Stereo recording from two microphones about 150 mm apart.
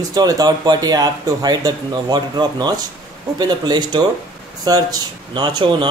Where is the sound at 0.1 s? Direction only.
25° right (ahead or behind).